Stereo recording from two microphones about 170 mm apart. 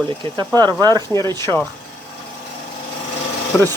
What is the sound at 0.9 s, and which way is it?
Speech, 20° left (ahead or behind).